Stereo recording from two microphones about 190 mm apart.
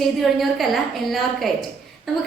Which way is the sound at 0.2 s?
Centre (ahead or behind).